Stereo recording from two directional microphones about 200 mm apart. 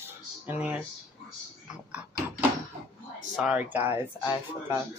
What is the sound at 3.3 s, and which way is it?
Speech, 5° right (ahead or behind).